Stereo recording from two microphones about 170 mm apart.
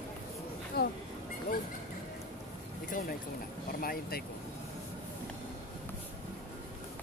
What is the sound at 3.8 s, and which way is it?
Speech, 60° left (ahead or behind).